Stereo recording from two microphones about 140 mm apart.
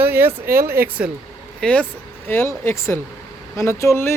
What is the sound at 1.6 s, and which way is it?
Speech, 5° left (ahead or behind).